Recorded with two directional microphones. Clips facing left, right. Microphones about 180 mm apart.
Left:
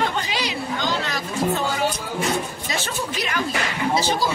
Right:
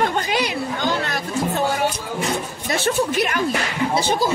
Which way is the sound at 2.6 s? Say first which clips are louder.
Right 7 dB; 55° right (ahead or behind).